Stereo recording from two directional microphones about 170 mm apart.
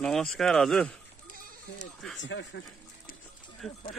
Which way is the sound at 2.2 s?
90° left.